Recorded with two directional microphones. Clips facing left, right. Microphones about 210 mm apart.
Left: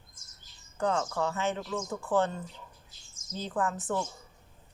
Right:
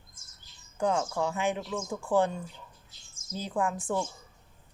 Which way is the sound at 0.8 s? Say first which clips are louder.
Right 1 dB; 10° right (ahead or behind).